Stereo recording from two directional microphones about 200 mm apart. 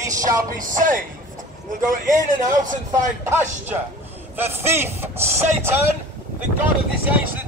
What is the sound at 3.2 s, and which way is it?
A man's voice, 10° right (ahead or behind).